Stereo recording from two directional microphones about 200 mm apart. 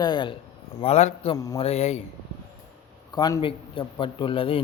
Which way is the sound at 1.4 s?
20° left (ahead or behind).